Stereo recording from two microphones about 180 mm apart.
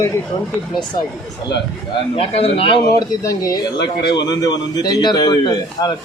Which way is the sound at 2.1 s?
30° left (ahead or behind).